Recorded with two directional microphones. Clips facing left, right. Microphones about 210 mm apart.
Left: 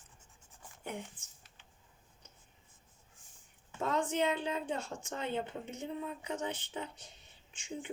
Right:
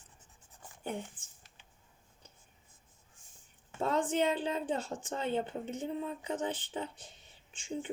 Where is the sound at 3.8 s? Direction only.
30° right (ahead or behind).